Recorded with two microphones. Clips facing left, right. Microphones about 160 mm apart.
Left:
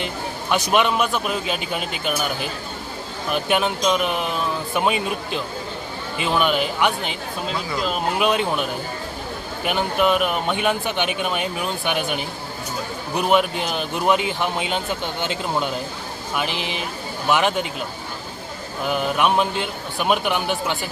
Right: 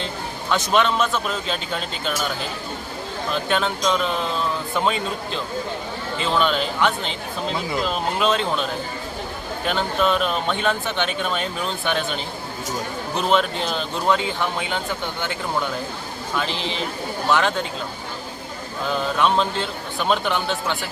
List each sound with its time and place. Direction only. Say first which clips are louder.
0.7 s speech: even; 15° left (ahead or behind)
3.3 s speech: left 2 dB; 15° left (ahead or behind)
8.2 s speech: even; 15° left (ahead or behind)
18.8 s speech: left 1 dB; 15° left (ahead or behind)